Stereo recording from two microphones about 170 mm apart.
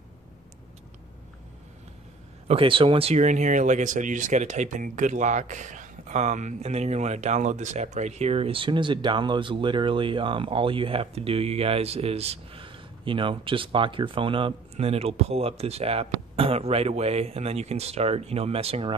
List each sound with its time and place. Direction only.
2.4 s speech: 30° right (ahead or behind)